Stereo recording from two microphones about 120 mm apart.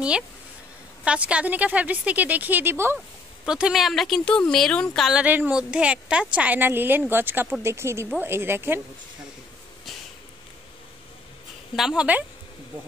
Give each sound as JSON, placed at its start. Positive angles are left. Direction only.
{"t": 1.0, "sound": "a woman's voice", "side_deg": -10}
{"t": 3.4, "sound": "speech", "side_deg": -5}
{"t": 5.2, "sound": "a woman's voice", "side_deg": -15}
{"t": 11.7, "sound": "speech", "side_deg": -5}